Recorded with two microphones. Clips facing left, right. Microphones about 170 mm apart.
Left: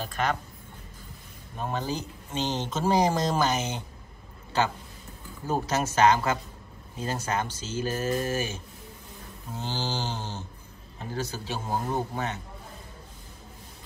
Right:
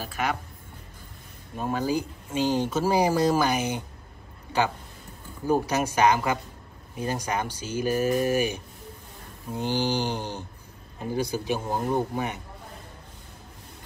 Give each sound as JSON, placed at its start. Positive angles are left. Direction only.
{"t": 0.0, "sound": "speech", "side_deg": -10}
{"t": 1.6, "sound": "speech", "side_deg": -10}